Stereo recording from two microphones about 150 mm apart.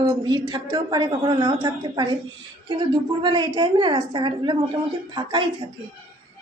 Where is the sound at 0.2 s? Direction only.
25° right (ahead or behind).